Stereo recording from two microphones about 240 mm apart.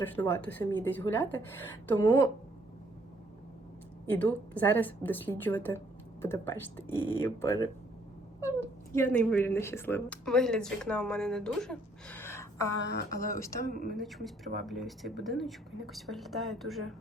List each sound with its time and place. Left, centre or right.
0.0 s speech: centre
4.2 s speech: centre
12.9 s a woman's voice: left
13.7 s speech: right
13.9 s speech: centre